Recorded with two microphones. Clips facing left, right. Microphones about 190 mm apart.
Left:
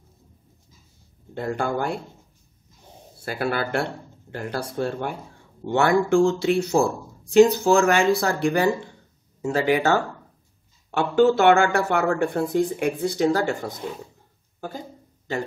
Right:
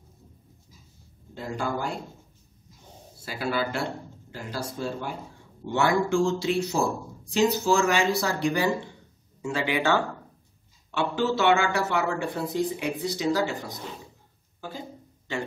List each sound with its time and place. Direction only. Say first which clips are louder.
1.3 s a man's voice: left 5 dB; 60° left (ahead or behind)
3.3 s a man's voice: left 3 dB; 60° left (ahead or behind)
9.4 s speech: left 6 dB; 40° left (ahead or behind)